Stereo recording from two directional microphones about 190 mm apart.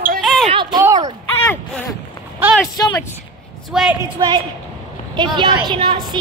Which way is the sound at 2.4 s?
10° right (ahead or behind).